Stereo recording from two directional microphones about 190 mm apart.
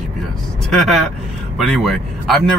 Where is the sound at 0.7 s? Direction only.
Centre (ahead or behind).